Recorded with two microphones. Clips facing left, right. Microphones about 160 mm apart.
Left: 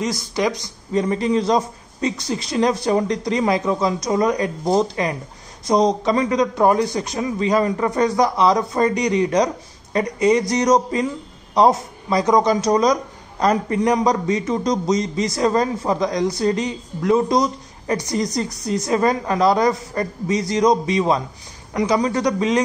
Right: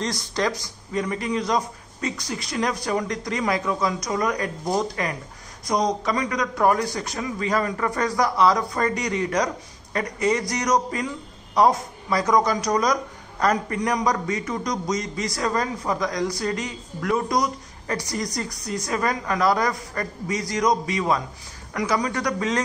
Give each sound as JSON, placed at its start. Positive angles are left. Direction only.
{"t": 0.0, "sound": "speech", "side_deg": 10}
{"t": 0.9, "sound": "speech", "side_deg": 30}